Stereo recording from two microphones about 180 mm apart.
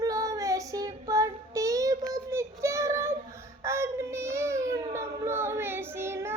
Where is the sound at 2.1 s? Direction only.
15° right (ahead or behind).